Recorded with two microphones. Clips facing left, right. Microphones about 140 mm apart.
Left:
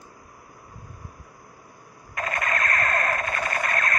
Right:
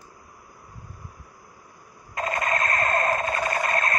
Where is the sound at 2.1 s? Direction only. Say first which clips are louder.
Right 2 dB; 25° right (ahead or behind).